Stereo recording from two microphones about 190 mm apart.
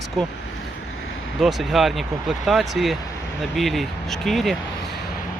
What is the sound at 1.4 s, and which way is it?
Speech, centre (ahead or behind).